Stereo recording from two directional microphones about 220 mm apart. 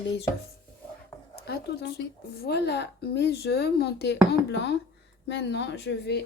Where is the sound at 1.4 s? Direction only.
45° left (ahead or behind).